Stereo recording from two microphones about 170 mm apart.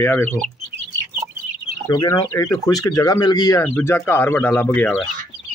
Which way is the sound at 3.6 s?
10° left (ahead or behind).